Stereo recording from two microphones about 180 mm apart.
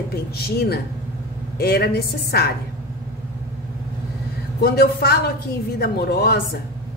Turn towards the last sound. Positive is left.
turn(degrees=60)  # may be behind; listen again after turning